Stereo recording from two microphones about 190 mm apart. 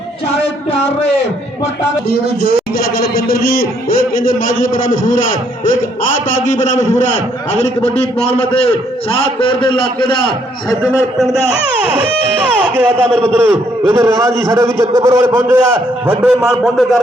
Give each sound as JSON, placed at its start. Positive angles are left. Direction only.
{"t": 0.4, "sound": "a sound", "side_deg": 30}
{"t": 2.0, "sound": "a man's voice", "side_deg": 55}
{"t": 10.9, "sound": "a man's voice", "side_deg": 0}